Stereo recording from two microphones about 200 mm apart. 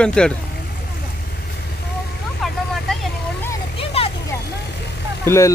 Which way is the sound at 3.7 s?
30° left (ahead or behind).